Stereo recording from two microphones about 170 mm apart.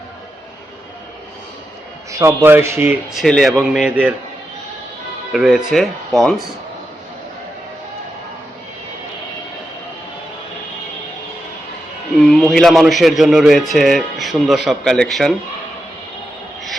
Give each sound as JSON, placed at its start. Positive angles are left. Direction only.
{"t": 2.1, "sound": "speech", "side_deg": -15}
{"t": 5.3, "sound": "a man's voice", "side_deg": 0}
{"t": 12.2, "sound": "a man's voice", "side_deg": 0}